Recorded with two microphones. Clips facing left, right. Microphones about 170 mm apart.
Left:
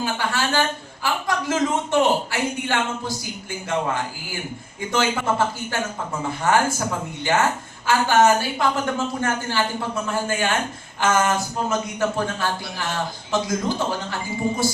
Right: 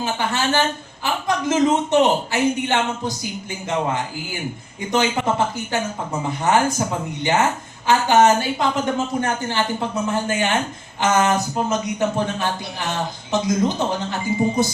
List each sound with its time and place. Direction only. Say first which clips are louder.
0.0 s a man's voice: right 2 dB; 20° right (ahead or behind)
4.9 s a man's voice: right 2 dB; 20° right (ahead or behind)